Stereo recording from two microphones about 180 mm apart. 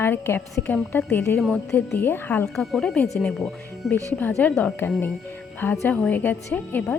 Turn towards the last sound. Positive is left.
turn(degrees=10)  # may be behind; listen again after turning